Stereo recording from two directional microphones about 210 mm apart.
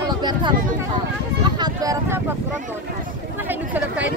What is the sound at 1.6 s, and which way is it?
Speech, 15° right (ahead or behind).